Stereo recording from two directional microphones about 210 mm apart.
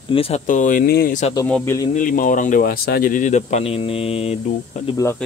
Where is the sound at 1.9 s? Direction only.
40° left (ahead or behind).